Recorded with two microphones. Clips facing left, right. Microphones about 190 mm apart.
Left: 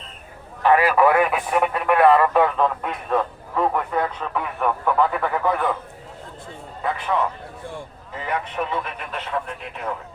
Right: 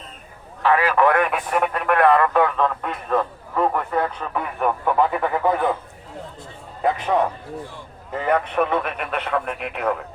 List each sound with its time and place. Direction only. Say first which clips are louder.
0.6 s speech: left 1 dB; 15° left (ahead or behind); by 5.5 s 15° right (ahead or behind)
6.9 s a man's voice: right 3 dB; 40° right (ahead or behind)
8.2 s speech: right 6 dB; 55° right (ahead or behind)